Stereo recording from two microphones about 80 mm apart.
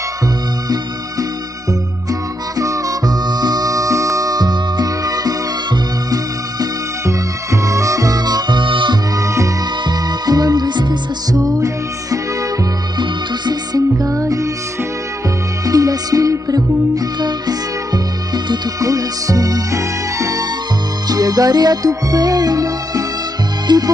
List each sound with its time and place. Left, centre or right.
2.5 s music: right
9.1 s music: right
9.8 s music: right
15.6 s music: right
23.7 s music: right